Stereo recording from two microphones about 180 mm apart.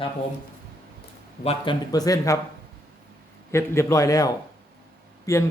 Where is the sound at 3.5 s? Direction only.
15° left (ahead or behind).